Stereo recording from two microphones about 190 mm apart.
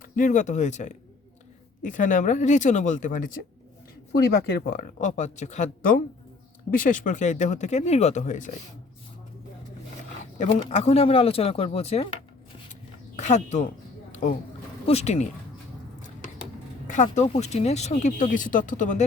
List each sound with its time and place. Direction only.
0.0 s speech: 40° left (ahead or behind)
4.5 s speech: 50° left (ahead or behind)
10.3 s speech: 40° left (ahead or behind)
13.1 s speech: 40° left (ahead or behind)
14.1 s a sound: 40° left (ahead or behind)
14.8 s speech: 35° left (ahead or behind)
16.8 s speech: 40° left (ahead or behind)